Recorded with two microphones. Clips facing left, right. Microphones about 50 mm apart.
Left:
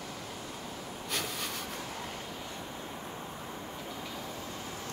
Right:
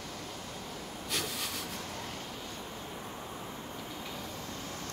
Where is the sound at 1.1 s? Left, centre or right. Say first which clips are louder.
Even; centre.